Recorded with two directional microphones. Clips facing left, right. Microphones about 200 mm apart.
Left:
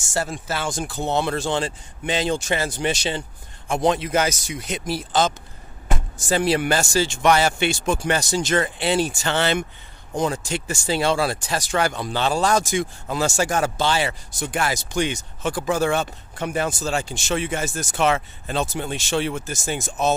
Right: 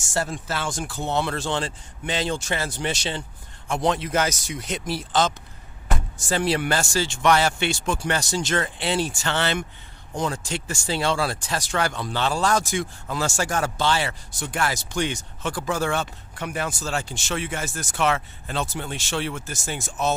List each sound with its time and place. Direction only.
0.1 s speech: 10° left (ahead or behind)